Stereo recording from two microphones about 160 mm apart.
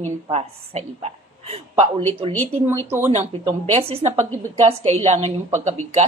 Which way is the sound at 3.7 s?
40° right (ahead or behind).